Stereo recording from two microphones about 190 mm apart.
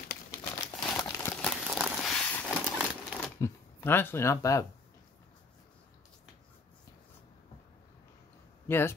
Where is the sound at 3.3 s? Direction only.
15° left (ahead or behind).